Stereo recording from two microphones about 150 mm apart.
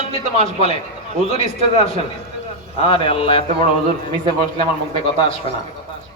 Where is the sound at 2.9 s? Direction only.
35° left (ahead or behind).